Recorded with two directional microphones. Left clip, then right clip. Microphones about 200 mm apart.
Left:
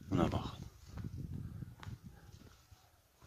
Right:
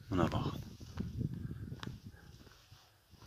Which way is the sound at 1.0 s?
60° right (ahead or behind).